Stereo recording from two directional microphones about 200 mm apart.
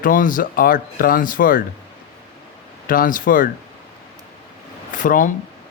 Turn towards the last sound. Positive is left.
turn(degrees=40)  # may be behind; listen again after turning